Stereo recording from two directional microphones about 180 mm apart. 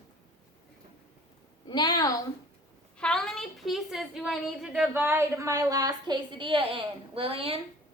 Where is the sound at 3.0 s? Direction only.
5° left (ahead or behind); by 7.6 s 30° right (ahead or behind).